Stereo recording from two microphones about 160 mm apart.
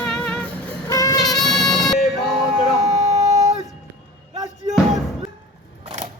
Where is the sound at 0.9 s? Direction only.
20° left (ahead or behind).